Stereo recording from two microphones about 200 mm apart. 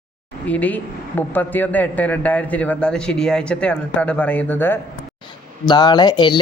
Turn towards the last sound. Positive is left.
turn(degrees=20)  # may be behind; listen again after turning